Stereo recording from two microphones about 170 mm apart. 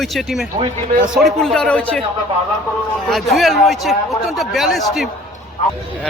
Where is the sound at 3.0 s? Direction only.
Centre (ahead or behind).